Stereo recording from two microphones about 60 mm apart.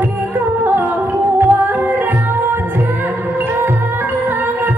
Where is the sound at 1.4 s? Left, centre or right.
Right.